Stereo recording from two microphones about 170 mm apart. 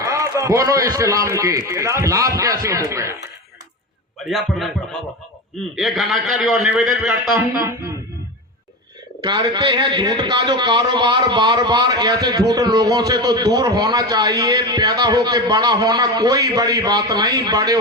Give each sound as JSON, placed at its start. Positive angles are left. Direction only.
{"t": 0.0, "sound": "a sound", "side_deg": -20}
{"t": 0.9, "sound": "a man's voice", "side_deg": -20}
{"t": 4.3, "sound": "a man's voice", "side_deg": 0}
{"t": 7.3, "sound": "speech", "side_deg": -15}
{"t": 9.2, "sound": "a man's voice", "side_deg": -25}